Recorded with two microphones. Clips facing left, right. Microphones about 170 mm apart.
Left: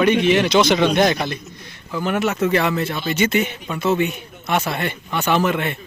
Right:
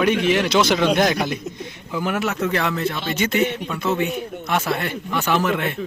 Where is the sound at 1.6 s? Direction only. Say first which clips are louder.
Even; 15° right (ahead or behind).